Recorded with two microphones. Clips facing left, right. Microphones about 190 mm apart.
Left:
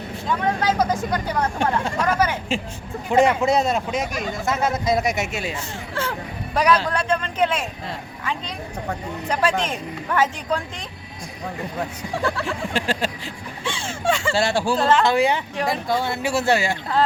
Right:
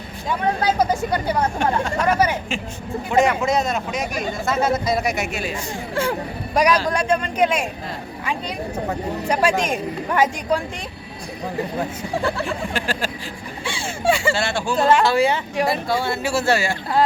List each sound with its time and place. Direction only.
0.3 s speech: 10° right (ahead or behind)
3.4 s speech: 30° left (ahead or behind)
5.9 s speech: 15° right (ahead or behind)
12.7 s speech: 25° left (ahead or behind)
13.7 s a sound: 10° right (ahead or behind)
14.3 s speech: 35° left (ahead or behind)
14.8 s speech: 10° right (ahead or behind)
15.0 s speech: 20° left (ahead or behind)
15.5 s speech: 10° right (ahead or behind)
16.0 s speech: 15° left (ahead or behind)